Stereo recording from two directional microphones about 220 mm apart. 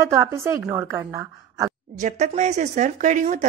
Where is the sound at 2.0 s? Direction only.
30° right (ahead or behind).